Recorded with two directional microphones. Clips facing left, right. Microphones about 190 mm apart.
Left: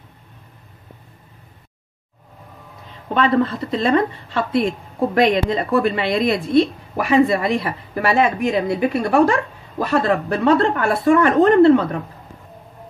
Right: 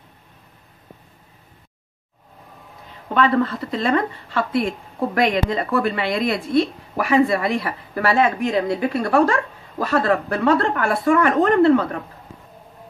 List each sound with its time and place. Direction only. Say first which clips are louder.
3.2 s a woman's voice: left 1 dB; 25° left (ahead or behind)